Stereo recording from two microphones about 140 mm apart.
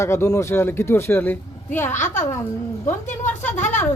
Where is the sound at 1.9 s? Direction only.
60° left (ahead or behind).